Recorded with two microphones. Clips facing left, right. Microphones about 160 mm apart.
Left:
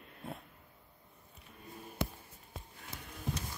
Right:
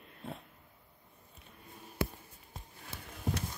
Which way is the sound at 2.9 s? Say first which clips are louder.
Even; 25° right (ahead or behind).